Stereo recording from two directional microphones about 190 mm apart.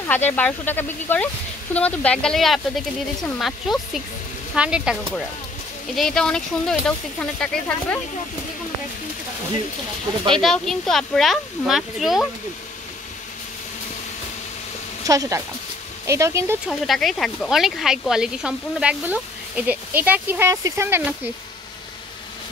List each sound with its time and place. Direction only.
0.0 s speech: 10° left (ahead or behind)
5.9 s speech: centre (ahead or behind)
10.3 s speech: 5° left (ahead or behind)
15.0 s speech: 15° right (ahead or behind)
16.8 s speech: centre (ahead or behind)